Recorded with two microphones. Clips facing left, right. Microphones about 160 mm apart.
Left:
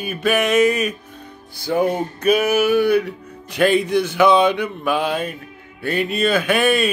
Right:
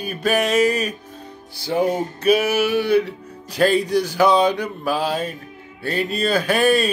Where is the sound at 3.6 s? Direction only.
35° right (ahead or behind).